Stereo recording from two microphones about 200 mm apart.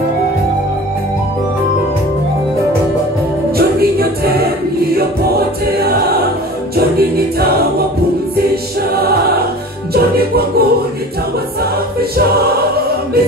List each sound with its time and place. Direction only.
3.5 s music: 50° right (ahead or behind)
5.8 s choir: 50° right (ahead or behind)
9.9 s music: 50° right (ahead or behind)